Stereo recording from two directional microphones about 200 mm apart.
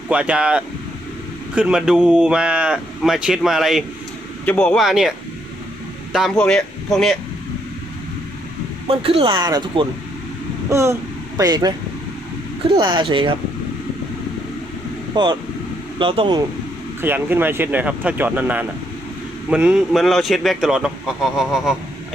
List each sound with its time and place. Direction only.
0.1 s speech: 5° right (ahead or behind)
6.1 s speech: centre (ahead or behind)
8.9 s speech: 30° right (ahead or behind)
12.8 s speech: 25° right (ahead or behind)
15.1 s speech: 20° right (ahead or behind)
17.0 s speech: 10° right (ahead or behind)